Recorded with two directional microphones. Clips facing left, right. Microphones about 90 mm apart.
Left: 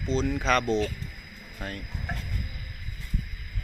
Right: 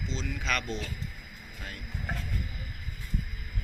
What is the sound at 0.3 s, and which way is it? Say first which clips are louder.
Speech: left 7 dB; 35° left (ahead or behind).